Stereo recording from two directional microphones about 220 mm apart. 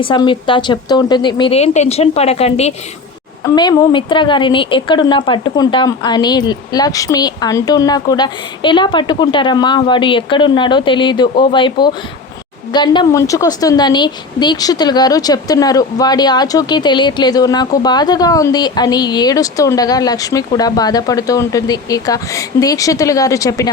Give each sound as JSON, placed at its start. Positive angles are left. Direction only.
{"t": 0.0, "sound": "speech", "side_deg": 20}
{"t": 3.4, "sound": "a woman's voice", "side_deg": 20}